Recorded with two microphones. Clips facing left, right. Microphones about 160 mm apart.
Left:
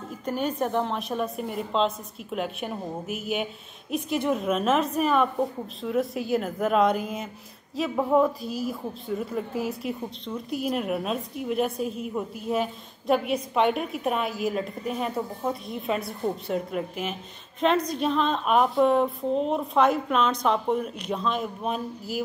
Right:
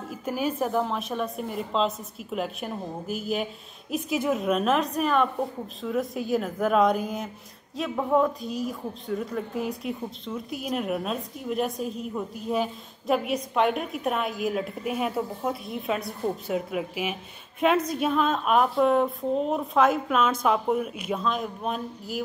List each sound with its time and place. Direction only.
0.1 s a woman's voice: 5° right (ahead or behind)